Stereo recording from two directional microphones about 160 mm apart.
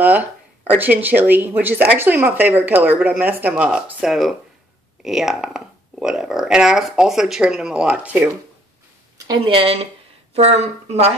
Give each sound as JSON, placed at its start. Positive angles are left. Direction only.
{"t": 0.0, "sound": "speech", "side_deg": -10}
{"t": 9.3, "sound": "speech", "side_deg": -35}